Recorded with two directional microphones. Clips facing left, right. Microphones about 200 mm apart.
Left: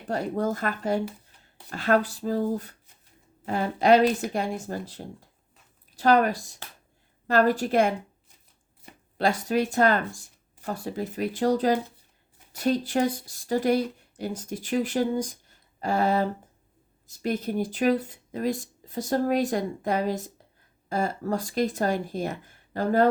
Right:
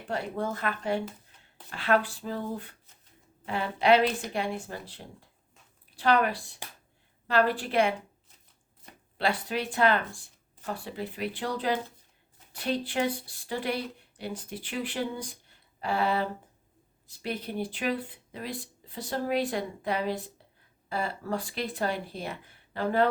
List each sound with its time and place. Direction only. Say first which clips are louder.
0.1 s speech: left 5 dB; 40° left (ahead or behind)
9.1 s speech: left 6 dB; 45° left (ahead or behind)